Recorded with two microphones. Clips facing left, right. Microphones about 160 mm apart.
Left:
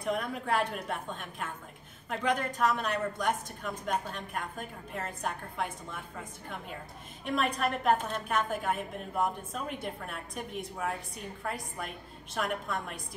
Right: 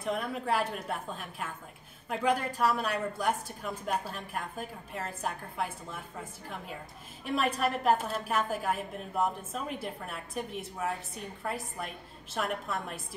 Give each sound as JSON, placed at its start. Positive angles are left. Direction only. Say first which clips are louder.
{"t": 0.0, "sound": "a woman's voice", "louder": "even", "side_deg": 0}
{"t": 7.2, "sound": "a woman's voice", "louder": "right 1 dB", "side_deg": -5}